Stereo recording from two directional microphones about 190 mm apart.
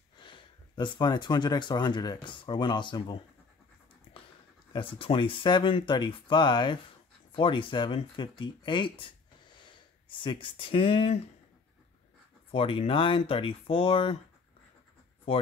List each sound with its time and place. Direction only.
0.2 s speech: 25° left (ahead or behind)
4.1 s dog: 30° left (ahead or behind)
4.7 s speech: 30° left (ahead or behind)
12.4 s speech: 30° left (ahead or behind)
15.3 s speech: 30° left (ahead or behind)